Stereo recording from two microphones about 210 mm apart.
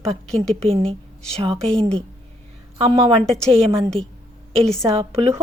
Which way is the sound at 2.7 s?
25° right (ahead or behind).